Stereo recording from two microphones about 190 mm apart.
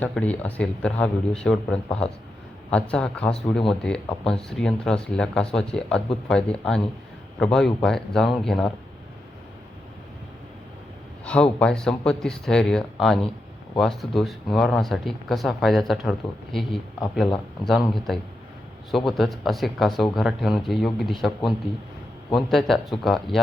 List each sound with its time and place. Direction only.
0.0 s speech: 5° left (ahead or behind)
11.6 s speech: 5° left (ahead or behind)